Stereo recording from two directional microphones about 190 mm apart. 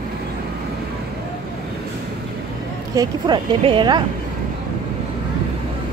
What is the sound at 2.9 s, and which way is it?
Speech, 25° right (ahead or behind).